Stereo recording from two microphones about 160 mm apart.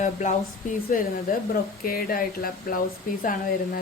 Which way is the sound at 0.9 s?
60° left (ahead or behind).